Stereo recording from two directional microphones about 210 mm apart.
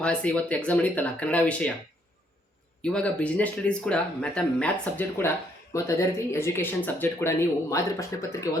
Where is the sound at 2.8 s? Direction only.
5° left (ahead or behind).